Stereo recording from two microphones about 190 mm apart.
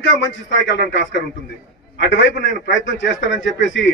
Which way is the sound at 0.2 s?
75° left (ahead or behind).